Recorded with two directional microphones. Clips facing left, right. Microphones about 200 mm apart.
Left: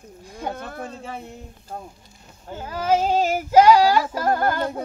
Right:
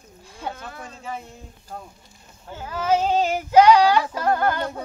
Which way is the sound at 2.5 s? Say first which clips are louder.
Left 1 dB; 40° left (ahead or behind).